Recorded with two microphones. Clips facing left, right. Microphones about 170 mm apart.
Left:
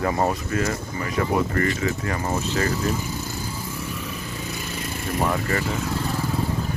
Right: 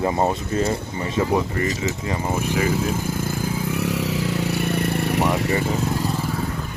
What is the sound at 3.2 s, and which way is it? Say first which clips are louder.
Vehicle: right 7 dB; 70° right (ahead or behind).